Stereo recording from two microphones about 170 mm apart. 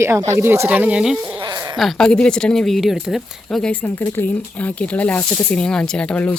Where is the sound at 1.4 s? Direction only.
20° right (ahead or behind).